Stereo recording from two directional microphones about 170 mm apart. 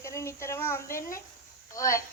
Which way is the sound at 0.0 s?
15° left (ahead or behind).